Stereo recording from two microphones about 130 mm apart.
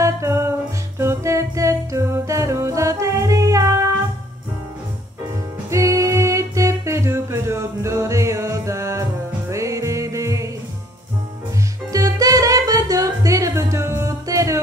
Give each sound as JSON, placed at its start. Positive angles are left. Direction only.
{"t": 0.0, "sound": "music", "side_deg": -20}
{"t": 5.7, "sound": "music", "side_deg": -25}
{"t": 11.9, "sound": "music", "side_deg": -25}